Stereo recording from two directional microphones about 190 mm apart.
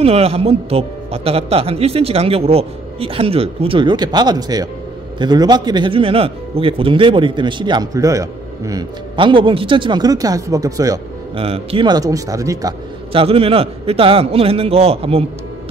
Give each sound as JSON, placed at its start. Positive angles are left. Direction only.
{"t": 0.0, "sound": "a man's voice", "side_deg": -30}
{"t": 11.3, "sound": "speech", "side_deg": -30}
{"t": 13.1, "sound": "a man's voice", "side_deg": -30}